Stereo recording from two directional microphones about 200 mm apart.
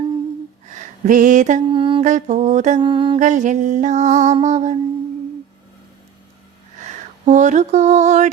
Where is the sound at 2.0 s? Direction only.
35° right (ahead or behind).